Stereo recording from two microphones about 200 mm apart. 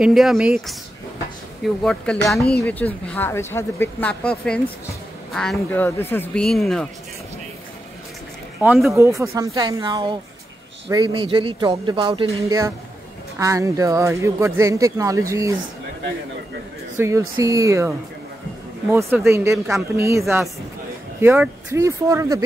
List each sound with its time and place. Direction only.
0.0 s speech: centre (ahead or behind)
1.8 s speech: centre (ahead or behind)
8.5 s speech: 5° right (ahead or behind)
8.9 s speech: 15° right (ahead or behind)
16.9 s speech: 15° right (ahead or behind)